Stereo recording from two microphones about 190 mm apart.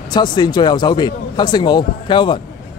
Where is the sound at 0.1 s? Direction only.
25° left (ahead or behind).